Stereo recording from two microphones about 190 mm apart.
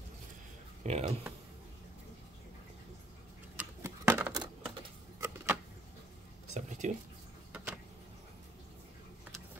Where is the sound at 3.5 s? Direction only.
10° right (ahead or behind).